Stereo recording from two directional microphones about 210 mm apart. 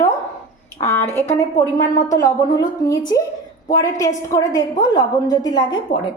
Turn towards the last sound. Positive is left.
turn(degrees=20)  # may be behind; listen again after turning